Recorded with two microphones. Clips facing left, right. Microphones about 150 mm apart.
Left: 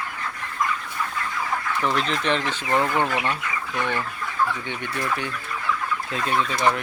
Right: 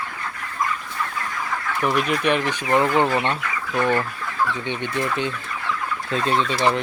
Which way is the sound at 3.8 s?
40° right (ahead or behind).